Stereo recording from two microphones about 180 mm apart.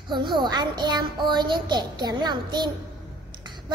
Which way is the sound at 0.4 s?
25° right (ahead or behind).